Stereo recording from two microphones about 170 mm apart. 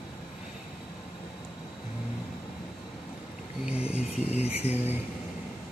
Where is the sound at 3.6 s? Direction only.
5° right (ahead or behind).